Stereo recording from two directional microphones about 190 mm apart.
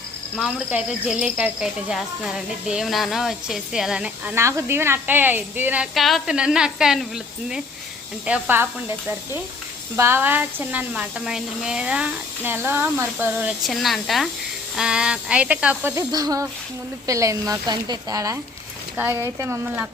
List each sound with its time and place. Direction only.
0.3 s speech: centre (ahead or behind)
8.3 s speech: 10° right (ahead or behind)